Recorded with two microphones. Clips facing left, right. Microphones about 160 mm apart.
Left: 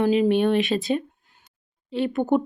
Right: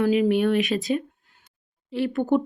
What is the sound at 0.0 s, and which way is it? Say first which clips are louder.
Speech: left 1 dB; 25° left (ahead or behind).